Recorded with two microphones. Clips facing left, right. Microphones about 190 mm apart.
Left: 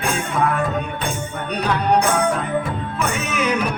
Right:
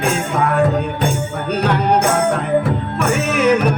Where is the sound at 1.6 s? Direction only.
65° right (ahead or behind).